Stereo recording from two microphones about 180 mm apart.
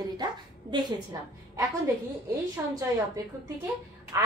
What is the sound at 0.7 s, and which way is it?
A woman's voice, 20° right (ahead or behind).